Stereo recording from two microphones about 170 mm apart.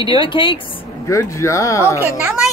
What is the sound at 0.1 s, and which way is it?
Speech, 30° left (ahead or behind).